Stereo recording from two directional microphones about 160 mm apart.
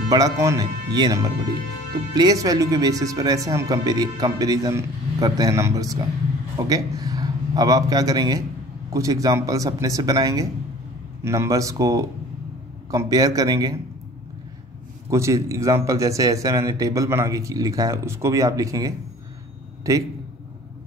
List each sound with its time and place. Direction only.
0.1 s a man's voice: 20° right (ahead or behind)
15.0 s a man's voice: 20° right (ahead or behind)